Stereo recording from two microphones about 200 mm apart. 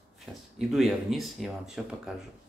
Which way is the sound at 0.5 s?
Centre (ahead or behind).